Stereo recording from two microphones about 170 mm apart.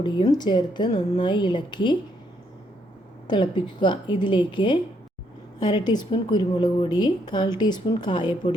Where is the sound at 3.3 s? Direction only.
30° left (ahead or behind).